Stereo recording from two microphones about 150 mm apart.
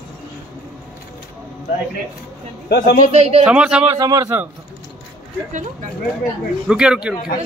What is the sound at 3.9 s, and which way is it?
Speech, 25° right (ahead or behind).